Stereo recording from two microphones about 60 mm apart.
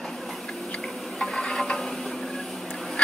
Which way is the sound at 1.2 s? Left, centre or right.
Centre.